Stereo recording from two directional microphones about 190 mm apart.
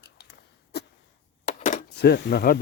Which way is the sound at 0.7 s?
60° left (ahead or behind).